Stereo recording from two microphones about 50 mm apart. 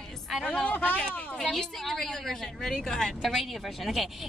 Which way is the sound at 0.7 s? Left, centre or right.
Left.